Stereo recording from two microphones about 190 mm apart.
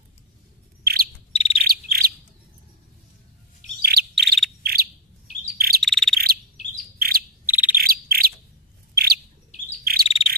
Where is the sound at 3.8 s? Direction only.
55° right (ahead or behind).